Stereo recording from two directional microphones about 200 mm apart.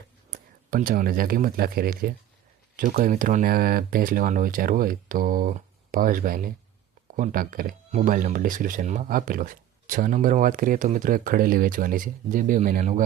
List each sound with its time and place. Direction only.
0.3 s speech: 45° right (ahead or behind)